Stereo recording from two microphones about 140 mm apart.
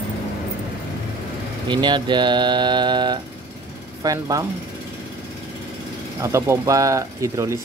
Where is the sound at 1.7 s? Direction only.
35° right (ahead or behind).